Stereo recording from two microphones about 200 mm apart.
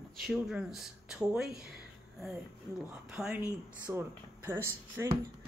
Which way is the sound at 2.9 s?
5° right (ahead or behind).